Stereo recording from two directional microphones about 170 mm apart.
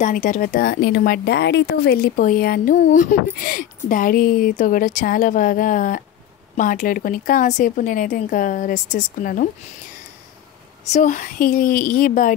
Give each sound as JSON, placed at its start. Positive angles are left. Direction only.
{"t": 0.0, "sound": "speech", "side_deg": 50}
{"t": 10.9, "sound": "speech", "side_deg": 45}